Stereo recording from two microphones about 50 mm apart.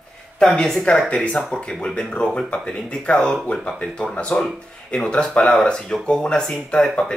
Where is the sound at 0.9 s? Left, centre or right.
Left.